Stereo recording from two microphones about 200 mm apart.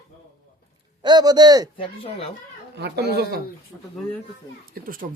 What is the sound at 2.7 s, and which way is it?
Speech, 55° right (ahead or behind).